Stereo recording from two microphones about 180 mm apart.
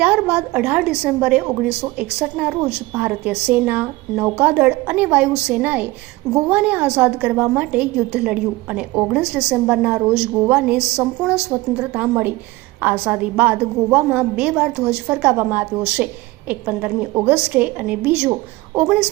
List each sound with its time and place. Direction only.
0.0 s a woman's voice: 10° right (ahead or behind)